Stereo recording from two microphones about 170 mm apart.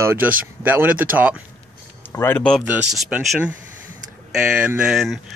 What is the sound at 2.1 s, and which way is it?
Speech, 10° left (ahead or behind).